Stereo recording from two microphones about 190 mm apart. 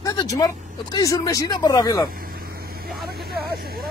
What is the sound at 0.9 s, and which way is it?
Speech, 20° left (ahead or behind).